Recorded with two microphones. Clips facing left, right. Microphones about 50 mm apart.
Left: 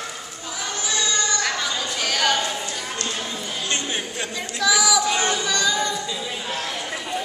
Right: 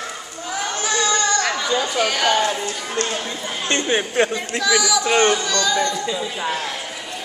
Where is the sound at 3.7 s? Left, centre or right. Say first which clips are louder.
Right 9 dB; right.